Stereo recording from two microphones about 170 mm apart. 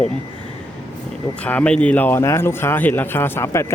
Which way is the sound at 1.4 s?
5° left (ahead or behind).